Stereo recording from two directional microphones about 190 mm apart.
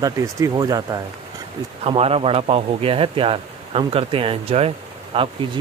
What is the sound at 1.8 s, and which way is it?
Speech, 30° right (ahead or behind).